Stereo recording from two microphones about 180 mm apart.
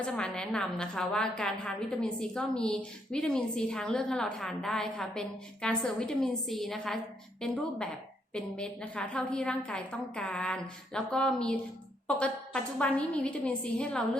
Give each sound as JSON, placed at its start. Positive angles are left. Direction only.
{"t": 0.0, "sound": "a woman's voice", "side_deg": 5}
{"t": 12.8, "sound": "a woman's voice", "side_deg": 5}